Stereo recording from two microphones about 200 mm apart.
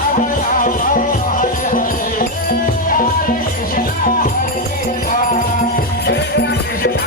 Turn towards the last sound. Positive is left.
turn(degrees=55)  # may be behind; listen again after turning